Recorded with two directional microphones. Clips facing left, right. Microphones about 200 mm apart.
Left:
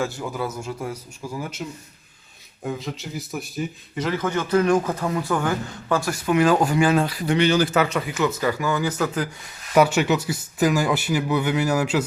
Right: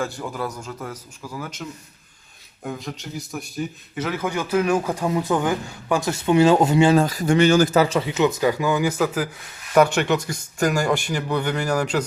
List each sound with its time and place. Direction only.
0.0 s a man's voice: 5° left (ahead or behind)
2.6 s a man's voice: centre (ahead or behind); by 6.9 s 25° right (ahead or behind)
6.9 s speech: 45° right (ahead or behind); by 9.3 s 10° right (ahead or behind)
9.7 s speech: 5° left (ahead or behind)